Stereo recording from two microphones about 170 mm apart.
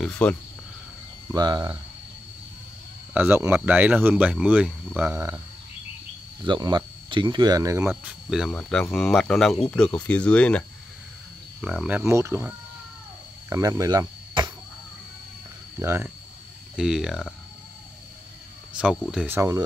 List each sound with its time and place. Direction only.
0.0 s speech: 5° left (ahead or behind)
1.3 s speech: 25° right (ahead or behind)
3.1 s speech: 10° right (ahead or behind)
6.4 s speech: 25° right (ahead or behind)
7.8 s speech: 5° right (ahead or behind)
11.6 s speech: 5° right (ahead or behind)
12.1 s speech: 15° right (ahead or behind)
13.5 s insect: 20° right (ahead or behind)
15.8 s speech: 15° right (ahead or behind)
16.7 s speech: 5° right (ahead or behind)
18.8 s speech: 5° right (ahead or behind)